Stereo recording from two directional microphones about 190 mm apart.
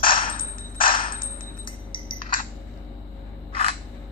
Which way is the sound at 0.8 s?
50° left (ahead or behind).